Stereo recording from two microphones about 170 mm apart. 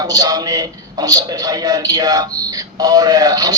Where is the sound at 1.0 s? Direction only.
20° right (ahead or behind).